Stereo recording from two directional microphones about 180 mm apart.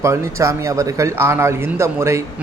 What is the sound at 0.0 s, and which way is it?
Speech, 15° right (ahead or behind).